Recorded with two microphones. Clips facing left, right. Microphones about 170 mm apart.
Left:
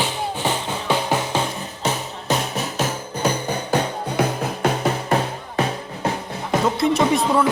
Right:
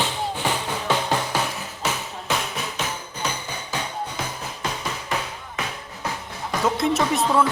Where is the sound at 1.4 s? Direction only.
35° left (ahead or behind).